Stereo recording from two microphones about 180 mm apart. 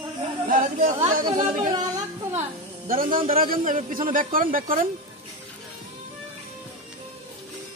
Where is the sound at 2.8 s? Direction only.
50° right (ahead or behind).